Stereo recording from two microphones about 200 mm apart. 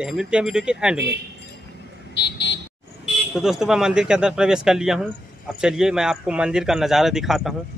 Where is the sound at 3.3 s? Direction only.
Centre (ahead or behind).